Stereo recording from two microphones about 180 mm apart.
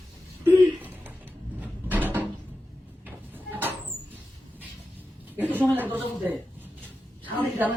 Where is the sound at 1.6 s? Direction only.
10° right (ahead or behind).